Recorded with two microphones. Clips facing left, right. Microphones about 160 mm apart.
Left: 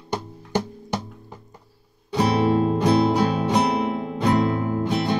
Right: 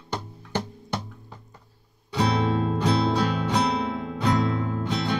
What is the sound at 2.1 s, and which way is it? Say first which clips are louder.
Music: left 4 dB; 15° left (ahead or behind).